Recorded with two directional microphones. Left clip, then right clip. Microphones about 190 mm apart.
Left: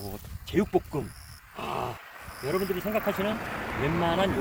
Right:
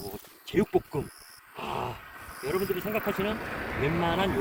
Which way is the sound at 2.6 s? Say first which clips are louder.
Left 1 dB; 30° left (ahead or behind).